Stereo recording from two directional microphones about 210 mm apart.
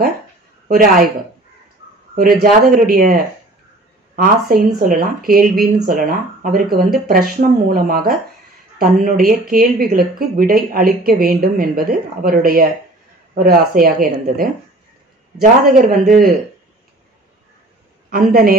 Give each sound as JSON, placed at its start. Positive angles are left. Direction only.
{"t": 0.7, "sound": "speech", "side_deg": -40}
{"t": 2.1, "sound": "speech", "side_deg": -45}
{"t": 15.6, "sound": "speech", "side_deg": -45}
{"t": 18.1, "sound": "speech", "side_deg": -45}